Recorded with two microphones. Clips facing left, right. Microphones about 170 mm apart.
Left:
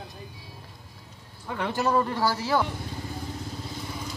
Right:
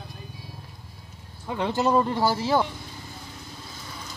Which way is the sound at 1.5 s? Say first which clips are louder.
Right 3 dB; 20° right (ahead or behind).